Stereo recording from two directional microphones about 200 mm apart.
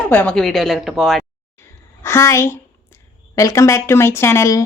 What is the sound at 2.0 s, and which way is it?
Speech, 15° left (ahead or behind).